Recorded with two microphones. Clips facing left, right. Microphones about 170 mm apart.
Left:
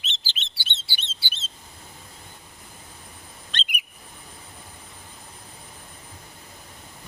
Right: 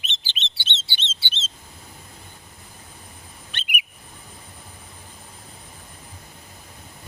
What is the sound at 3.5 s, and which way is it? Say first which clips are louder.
Bird: right 1 dB; 10° right (ahead or behind).